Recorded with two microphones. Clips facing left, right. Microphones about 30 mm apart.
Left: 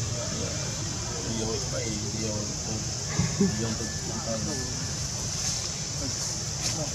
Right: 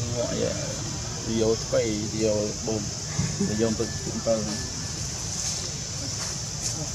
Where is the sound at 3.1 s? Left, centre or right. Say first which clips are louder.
Left 2 dB; centre.